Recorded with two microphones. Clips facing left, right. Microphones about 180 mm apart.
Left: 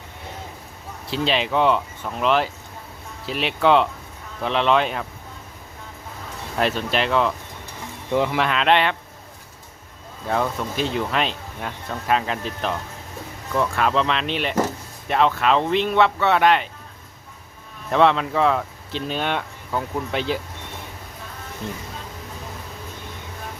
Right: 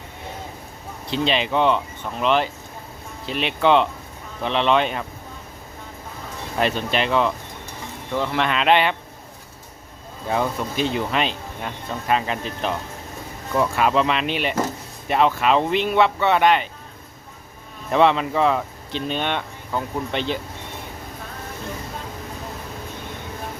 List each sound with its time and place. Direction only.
1.0 s speech: 5° left (ahead or behind)
6.6 s speech: centre (ahead or behind)
8.1 s speech: 15° left (ahead or behind)
8.4 s speech: centre (ahead or behind)
10.2 s speech: 5° right (ahead or behind)
17.9 s speech: 5° right (ahead or behind)